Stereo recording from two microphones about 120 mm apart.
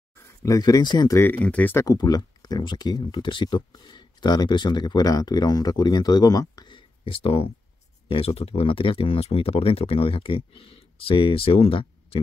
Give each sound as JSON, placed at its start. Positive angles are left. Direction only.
{"t": 0.4, "sound": "speech", "side_deg": 30}
{"t": 1.1, "sound": "speech", "side_deg": 15}
{"t": 1.9, "sound": "speech", "side_deg": 35}
{"t": 6.7, "sound": "a sound", "side_deg": 50}
{"t": 8.1, "sound": "speech", "side_deg": 55}